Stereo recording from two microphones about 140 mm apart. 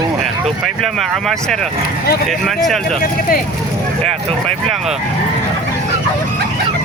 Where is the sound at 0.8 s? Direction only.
Centre (ahead or behind).